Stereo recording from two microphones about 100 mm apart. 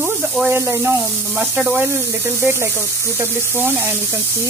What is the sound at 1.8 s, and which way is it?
Speech, 20° right (ahead or behind).